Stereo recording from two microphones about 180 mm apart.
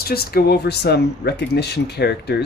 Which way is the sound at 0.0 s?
60° left (ahead or behind).